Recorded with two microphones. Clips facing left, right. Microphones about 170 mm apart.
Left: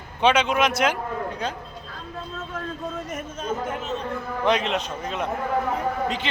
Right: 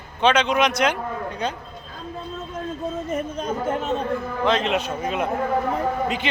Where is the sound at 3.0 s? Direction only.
35° right (ahead or behind).